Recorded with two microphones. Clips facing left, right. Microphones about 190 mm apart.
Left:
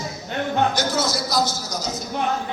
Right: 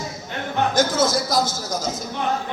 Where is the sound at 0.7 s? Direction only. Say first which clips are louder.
Right 4 dB; 50° right (ahead or behind).